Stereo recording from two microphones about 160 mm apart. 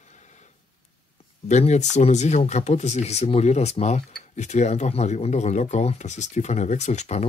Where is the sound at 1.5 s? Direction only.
45° left (ahead or behind).